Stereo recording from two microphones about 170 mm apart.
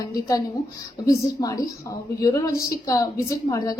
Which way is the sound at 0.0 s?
20° left (ahead or behind).